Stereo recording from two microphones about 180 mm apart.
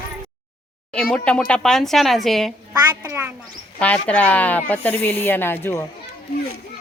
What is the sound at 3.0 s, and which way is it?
Speech, 15° right (ahead or behind).